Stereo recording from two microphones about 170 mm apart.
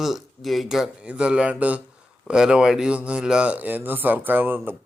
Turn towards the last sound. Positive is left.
turn(degrees=-10)  # may be behind; listen again after turning